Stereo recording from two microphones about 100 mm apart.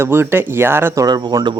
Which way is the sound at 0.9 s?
40° right (ahead or behind).